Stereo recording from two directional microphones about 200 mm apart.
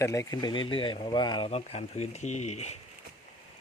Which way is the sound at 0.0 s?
15° left (ahead or behind).